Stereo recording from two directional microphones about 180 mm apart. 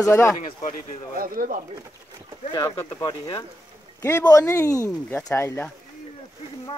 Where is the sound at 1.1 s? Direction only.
50° right (ahead or behind).